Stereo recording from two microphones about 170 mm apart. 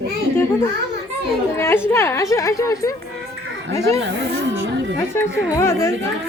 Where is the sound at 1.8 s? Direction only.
15° left (ahead or behind).